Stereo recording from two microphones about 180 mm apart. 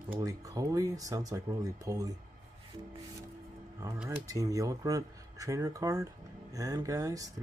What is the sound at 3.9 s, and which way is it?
Speech, 5° right (ahead or behind).